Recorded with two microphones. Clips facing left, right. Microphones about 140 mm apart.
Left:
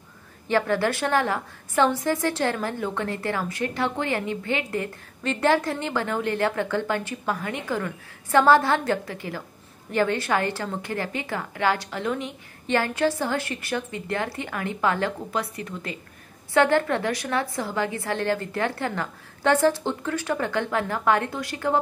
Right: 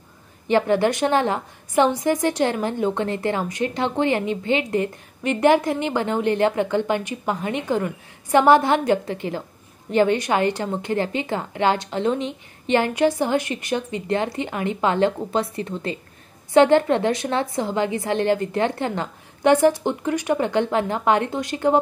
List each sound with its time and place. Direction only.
0.5 s a woman's voice: 20° right (ahead or behind)